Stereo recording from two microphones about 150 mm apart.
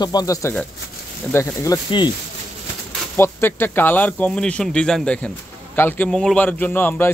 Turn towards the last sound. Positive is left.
turn(degrees=15)  # may be behind; listen again after turning